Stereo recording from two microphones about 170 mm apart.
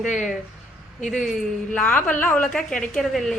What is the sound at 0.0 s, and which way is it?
Speech, 45° left (ahead or behind).